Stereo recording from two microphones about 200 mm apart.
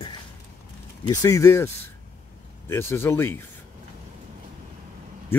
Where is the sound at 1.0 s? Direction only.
15° left (ahead or behind).